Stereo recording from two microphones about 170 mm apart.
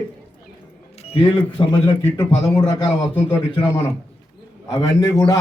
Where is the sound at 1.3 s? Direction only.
35° left (ahead or behind).